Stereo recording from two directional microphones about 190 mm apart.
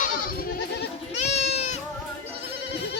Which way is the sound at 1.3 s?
35° left (ahead or behind).